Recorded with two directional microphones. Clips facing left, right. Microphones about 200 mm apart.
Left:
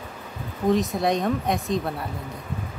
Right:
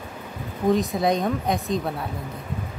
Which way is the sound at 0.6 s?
Centre (ahead or behind).